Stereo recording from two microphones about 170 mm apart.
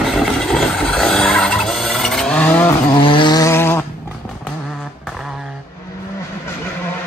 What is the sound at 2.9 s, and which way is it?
Vehicle, 30° left (ahead or behind).